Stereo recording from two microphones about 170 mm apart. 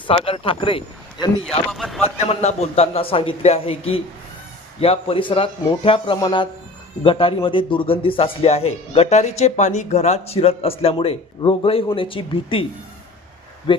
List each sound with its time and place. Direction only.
0.1 s a man's voice: 35° left (ahead or behind)
1.7 s speech: centre (ahead or behind)
2.1 s a man's voice: 40° left (ahead or behind)
13.7 s speech: 30° left (ahead or behind)